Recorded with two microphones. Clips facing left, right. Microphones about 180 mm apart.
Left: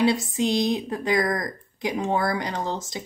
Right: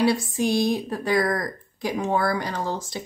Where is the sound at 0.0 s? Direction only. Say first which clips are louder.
Even; 20° left (ahead or behind).